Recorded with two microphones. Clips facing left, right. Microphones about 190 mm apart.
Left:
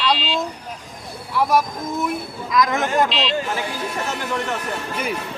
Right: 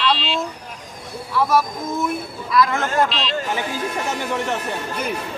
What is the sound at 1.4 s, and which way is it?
Speech, 15° left (ahead or behind).